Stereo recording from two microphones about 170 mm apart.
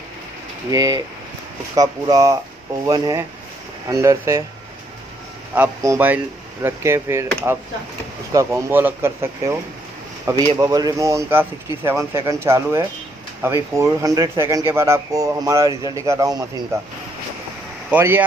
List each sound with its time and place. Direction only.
0.7 s speech: 20° right (ahead or behind)
5.5 s speech: 15° right (ahead or behind)
17.9 s speech: 10° right (ahead or behind)